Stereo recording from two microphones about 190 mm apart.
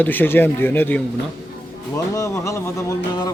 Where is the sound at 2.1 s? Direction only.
15° left (ahead or behind).